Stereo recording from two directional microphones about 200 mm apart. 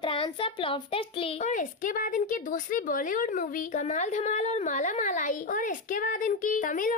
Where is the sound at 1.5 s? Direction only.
40° left (ahead or behind).